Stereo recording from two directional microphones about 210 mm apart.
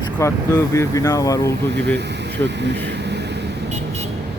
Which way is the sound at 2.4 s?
55° right (ahead or behind).